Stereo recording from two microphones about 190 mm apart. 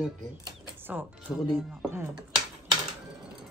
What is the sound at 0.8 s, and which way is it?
Music, 10° right (ahead or behind).